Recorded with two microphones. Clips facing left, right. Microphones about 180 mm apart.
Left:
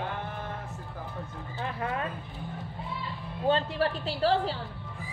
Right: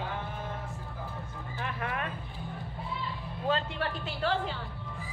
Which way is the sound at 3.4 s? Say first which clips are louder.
Left 5 dB; 35° left (ahead or behind).